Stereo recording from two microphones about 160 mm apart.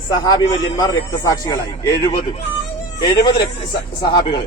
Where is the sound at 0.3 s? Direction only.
25° left (ahead or behind).